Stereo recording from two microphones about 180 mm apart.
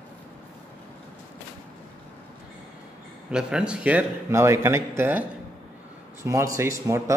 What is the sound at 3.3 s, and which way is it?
A man's voice, 5° right (ahead or behind).